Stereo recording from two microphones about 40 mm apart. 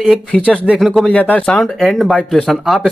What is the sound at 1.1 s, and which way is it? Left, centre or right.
Speech, left.